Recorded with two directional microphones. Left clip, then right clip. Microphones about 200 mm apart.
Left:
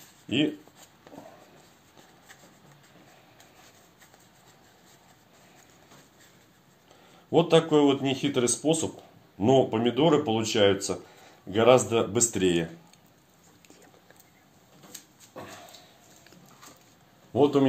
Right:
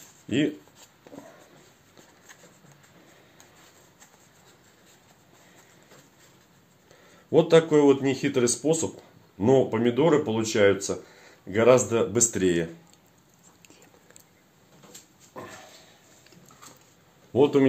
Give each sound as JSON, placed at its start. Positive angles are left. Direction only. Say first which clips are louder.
{"t": 7.2, "sound": "speech", "louder": "right 3 dB", "side_deg": -35}
{"t": 17.3, "sound": "speech", "louder": "right 2 dB", "side_deg": -35}